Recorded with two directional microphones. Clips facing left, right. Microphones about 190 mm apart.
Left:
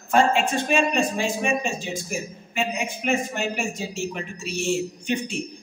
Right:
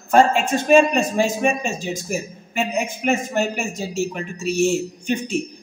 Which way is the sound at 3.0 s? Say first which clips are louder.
Right 3 dB; 45° right (ahead or behind).